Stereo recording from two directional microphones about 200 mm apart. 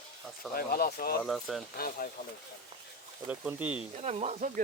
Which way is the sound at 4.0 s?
30° right (ahead or behind).